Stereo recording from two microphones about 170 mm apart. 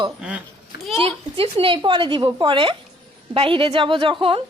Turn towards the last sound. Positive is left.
turn(degrees=-30)  # may be behind; listen again after turning